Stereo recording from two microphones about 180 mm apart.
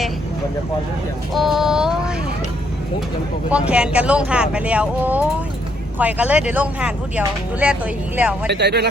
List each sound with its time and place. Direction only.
1.3 s a sound: centre (ahead or behind)
3.5 s speech: 5° right (ahead or behind)
8.4 s speech: 65° right (ahead or behind)